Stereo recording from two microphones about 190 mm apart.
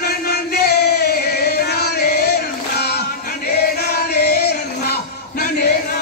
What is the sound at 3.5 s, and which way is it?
Music, 55° left (ahead or behind).